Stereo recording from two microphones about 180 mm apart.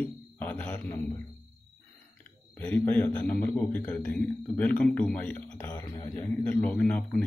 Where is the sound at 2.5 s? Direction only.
10° left (ahead or behind).